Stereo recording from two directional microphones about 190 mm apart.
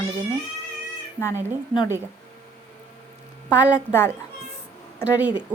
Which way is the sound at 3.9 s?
10° left (ahead or behind).